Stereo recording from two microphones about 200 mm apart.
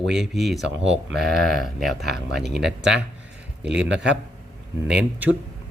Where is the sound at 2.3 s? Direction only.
55° right (ahead or behind).